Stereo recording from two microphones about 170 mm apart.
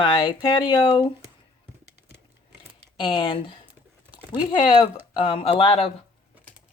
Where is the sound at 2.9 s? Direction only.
30° left (ahead or behind).